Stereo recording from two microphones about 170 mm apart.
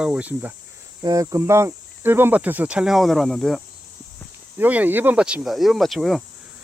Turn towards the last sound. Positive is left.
turn(degrees=0)  # may be behind; listen again after turning